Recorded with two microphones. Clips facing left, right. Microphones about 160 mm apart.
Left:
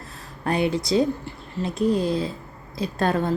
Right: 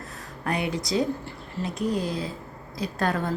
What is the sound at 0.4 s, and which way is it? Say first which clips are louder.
A woman's voice: left 5 dB; 30° left (ahead or behind).